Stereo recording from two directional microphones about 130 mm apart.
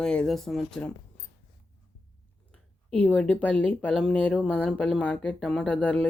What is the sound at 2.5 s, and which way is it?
Speech, 5° left (ahead or behind).